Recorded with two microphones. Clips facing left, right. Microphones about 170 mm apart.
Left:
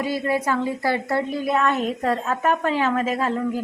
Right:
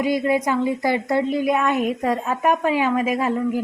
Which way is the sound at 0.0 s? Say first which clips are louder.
Right 3 dB; 15° right (ahead or behind).